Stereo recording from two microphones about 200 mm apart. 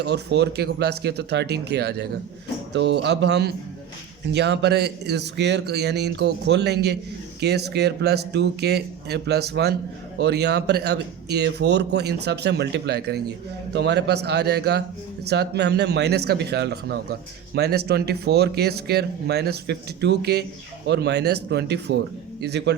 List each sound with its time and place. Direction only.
0.0 s a man's voice: 55° right (ahead or behind)